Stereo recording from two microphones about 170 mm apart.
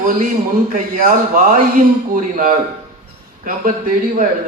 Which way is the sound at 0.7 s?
55° right (ahead or behind).